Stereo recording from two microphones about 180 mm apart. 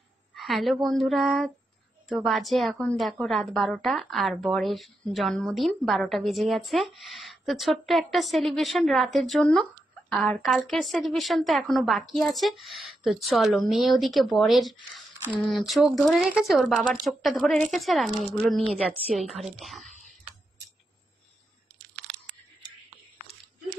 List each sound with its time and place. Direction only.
0.4 s a woman's voice: centre (ahead or behind)